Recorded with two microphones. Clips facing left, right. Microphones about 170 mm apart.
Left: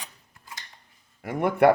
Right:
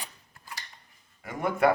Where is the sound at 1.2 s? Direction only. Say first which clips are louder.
Left 5 dB; 60° left (ahead or behind).